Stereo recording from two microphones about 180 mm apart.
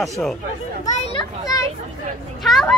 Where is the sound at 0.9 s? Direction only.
35° left (ahead or behind).